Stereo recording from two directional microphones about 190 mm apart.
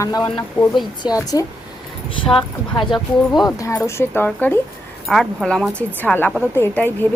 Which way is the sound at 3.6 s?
15° left (ahead or behind).